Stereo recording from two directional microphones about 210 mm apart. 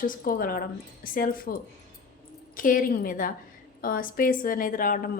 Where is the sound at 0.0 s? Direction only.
45° left (ahead or behind).